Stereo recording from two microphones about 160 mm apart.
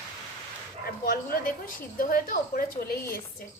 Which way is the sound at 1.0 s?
65° left (ahead or behind).